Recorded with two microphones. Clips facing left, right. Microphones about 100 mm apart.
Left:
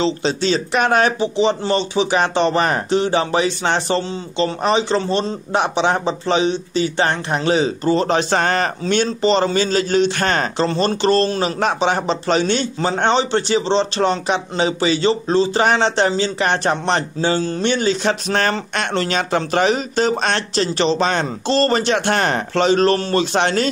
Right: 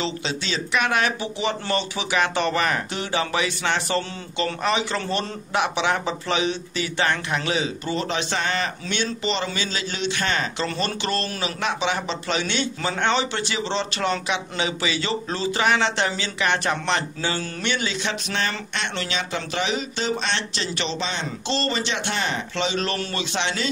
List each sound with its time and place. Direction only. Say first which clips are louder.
0.0 s speech: left 9 dB; 35° left (ahead or behind)
10.7 s speech: left 10 dB; 30° left (ahead or behind)
21.0 s speech: left 9 dB; 50° left (ahead or behind)